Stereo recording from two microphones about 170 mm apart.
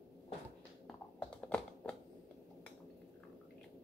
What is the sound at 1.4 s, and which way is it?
Typing, 5° left (ahead or behind).